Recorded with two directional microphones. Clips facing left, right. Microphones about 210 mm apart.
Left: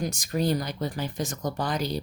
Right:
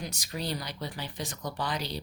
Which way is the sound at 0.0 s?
50° left (ahead or behind).